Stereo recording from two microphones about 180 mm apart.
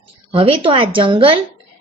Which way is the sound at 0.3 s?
30° right (ahead or behind).